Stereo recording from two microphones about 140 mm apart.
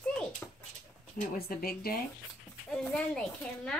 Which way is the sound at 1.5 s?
90° left.